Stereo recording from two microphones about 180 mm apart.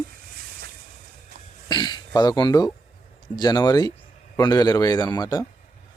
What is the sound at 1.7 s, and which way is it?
A man's voice, 25° left (ahead or behind).